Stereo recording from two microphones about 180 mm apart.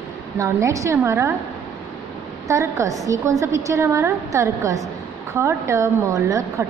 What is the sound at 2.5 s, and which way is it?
A woman's voice, 15° right (ahead or behind).